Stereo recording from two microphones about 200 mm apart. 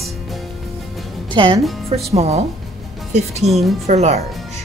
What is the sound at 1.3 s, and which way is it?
Speech, 25° right (ahead or behind).